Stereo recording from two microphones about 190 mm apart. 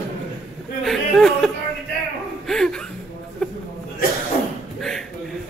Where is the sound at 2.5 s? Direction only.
Centre (ahead or behind).